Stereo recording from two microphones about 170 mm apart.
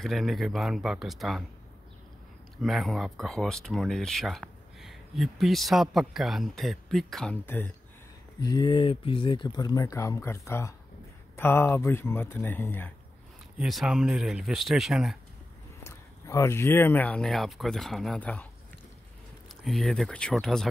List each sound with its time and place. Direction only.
0.0 s speech: centre (ahead or behind)
2.6 s speech: centre (ahead or behind)
8.4 s speech: 25° left (ahead or behind)
13.6 s speech: centre (ahead or behind)
15.8 s speech: 15° left (ahead or behind)
19.6 s speech: centre (ahead or behind)